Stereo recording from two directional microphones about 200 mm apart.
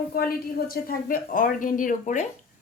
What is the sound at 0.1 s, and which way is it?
A woman's voice, 50° left (ahead or behind).